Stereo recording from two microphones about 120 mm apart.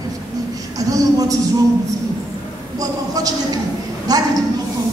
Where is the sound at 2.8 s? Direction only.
30° right (ahead or behind).